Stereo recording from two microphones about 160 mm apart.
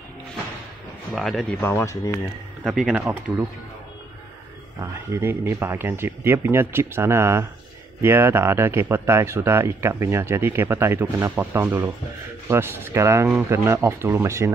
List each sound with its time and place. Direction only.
1.1 s speech: centre (ahead or behind)
1.6 s speech: 15° left (ahead or behind)
2.6 s speech: centre (ahead or behind)
4.7 s speech: 15° right (ahead or behind)